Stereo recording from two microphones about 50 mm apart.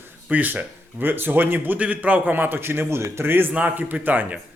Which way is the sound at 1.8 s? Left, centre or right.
Right.